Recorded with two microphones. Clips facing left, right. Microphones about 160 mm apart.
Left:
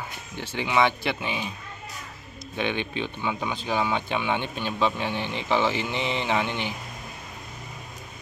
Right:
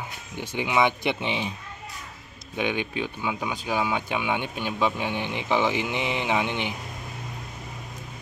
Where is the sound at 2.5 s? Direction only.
10° right (ahead or behind).